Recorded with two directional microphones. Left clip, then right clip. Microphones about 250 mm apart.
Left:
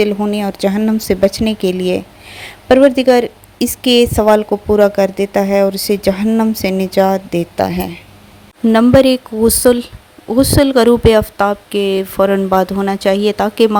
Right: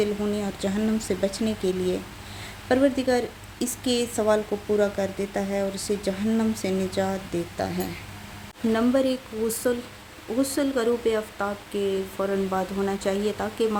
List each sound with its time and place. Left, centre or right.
0.0 s a woman's voice: left